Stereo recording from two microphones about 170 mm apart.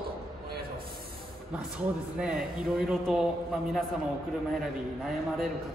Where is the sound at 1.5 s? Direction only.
5° right (ahead or behind).